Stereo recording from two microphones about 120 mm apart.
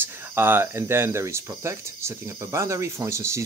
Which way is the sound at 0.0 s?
20° right (ahead or behind).